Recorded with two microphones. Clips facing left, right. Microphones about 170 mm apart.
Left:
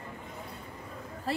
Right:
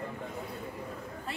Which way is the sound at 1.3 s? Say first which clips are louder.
Left 9 dB; 35° left (ahead or behind).